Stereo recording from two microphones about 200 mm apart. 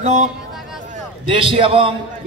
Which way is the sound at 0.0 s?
35° right (ahead or behind).